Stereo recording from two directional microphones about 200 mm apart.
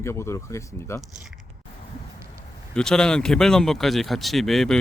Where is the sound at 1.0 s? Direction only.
Centre (ahead or behind).